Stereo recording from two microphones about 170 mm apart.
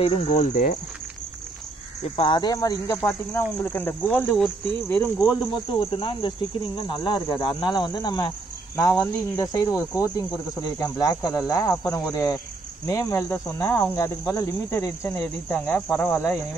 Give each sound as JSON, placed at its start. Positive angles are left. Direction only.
{"t": 0.0, "sound": "speech", "side_deg": 35}
{"t": 0.3, "sound": "speech", "side_deg": 50}
{"t": 2.0, "sound": "speech", "side_deg": 30}
{"t": 3.6, "sound": "cricket", "side_deg": 10}
{"t": 5.5, "sound": "speech", "side_deg": 30}
{"t": 8.7, "sound": "cricket", "side_deg": 15}
{"t": 9.5, "sound": "speech", "side_deg": 20}
{"t": 12.8, "sound": "cricket", "side_deg": 15}